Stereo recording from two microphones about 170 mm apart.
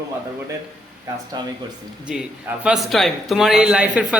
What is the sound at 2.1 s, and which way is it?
A woman's voice, centre (ahead or behind).